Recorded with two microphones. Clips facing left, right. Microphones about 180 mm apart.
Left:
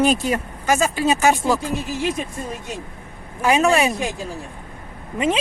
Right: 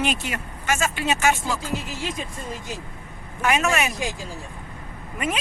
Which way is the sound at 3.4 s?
30° left (ahead or behind).